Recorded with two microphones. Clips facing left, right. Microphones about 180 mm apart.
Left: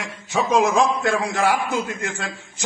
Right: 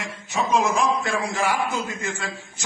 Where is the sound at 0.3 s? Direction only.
75° left (ahead or behind).